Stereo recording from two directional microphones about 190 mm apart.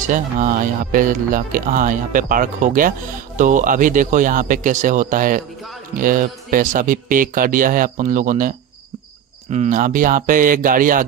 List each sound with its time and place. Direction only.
0.0 s speech: 40° right (ahead or behind)